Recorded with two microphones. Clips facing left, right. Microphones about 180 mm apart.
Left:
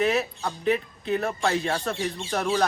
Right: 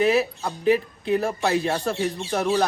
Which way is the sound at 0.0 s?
5° right (ahead or behind).